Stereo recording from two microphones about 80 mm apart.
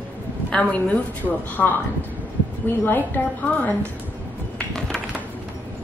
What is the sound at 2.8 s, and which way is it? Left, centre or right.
Speech, left.